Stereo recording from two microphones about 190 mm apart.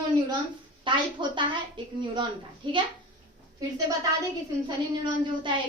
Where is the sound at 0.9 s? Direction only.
25° right (ahead or behind).